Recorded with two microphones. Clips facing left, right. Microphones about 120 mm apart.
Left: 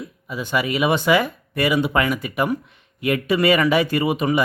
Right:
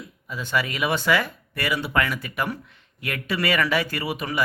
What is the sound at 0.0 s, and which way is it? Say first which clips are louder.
Speech: left 5 dB; 15° left (ahead or behind).